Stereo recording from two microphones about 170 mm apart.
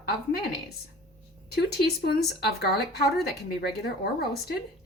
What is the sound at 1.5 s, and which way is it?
Speech, 70° left (ahead or behind).